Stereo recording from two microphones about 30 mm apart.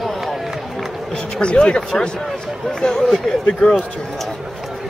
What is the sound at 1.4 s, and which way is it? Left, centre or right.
Speech, left.